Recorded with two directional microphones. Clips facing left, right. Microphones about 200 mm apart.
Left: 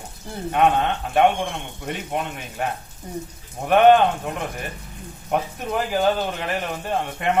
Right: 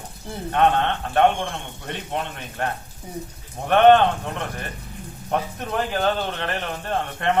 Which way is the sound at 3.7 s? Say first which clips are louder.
Even; 5° left (ahead or behind).